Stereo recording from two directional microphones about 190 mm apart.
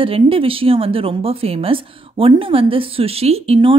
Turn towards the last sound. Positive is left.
turn(degrees=-30)  # may be behind; listen again after turning